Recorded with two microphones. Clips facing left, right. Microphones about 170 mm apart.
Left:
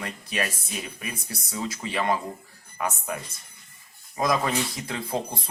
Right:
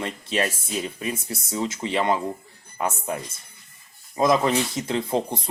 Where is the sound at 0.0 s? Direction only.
25° right (ahead or behind).